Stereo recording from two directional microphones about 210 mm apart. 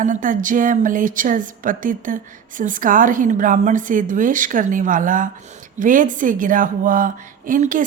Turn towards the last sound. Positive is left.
turn(degrees=-40)  # may be behind; listen again after turning